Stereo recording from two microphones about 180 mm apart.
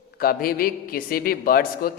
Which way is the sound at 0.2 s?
55° left (ahead or behind).